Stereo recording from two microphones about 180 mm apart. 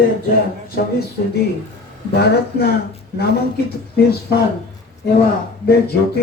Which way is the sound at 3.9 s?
60° left (ahead or behind).